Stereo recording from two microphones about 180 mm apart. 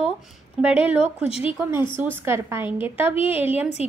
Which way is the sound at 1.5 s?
10° right (ahead or behind).